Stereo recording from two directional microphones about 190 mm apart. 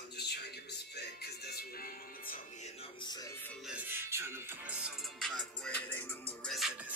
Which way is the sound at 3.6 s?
10° right (ahead or behind).